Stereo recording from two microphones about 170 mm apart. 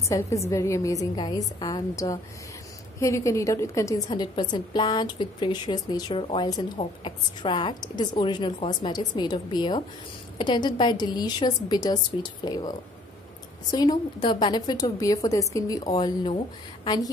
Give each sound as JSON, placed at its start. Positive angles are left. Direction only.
{"t": 0.1, "sound": "a woman's voice", "side_deg": 15}